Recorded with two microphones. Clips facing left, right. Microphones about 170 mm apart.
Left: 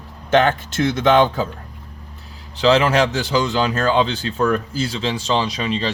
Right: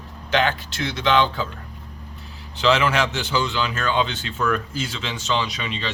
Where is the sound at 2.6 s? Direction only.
35° left (ahead or behind).